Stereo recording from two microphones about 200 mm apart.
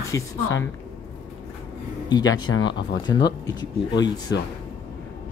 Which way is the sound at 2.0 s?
20° left (ahead or behind).